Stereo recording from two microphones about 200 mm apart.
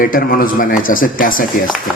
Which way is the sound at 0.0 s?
45° left (ahead or behind).